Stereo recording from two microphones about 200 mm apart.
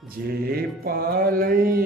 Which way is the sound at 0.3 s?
50° right (ahead or behind).